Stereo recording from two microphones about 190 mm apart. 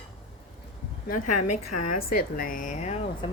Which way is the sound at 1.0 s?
45° left (ahead or behind).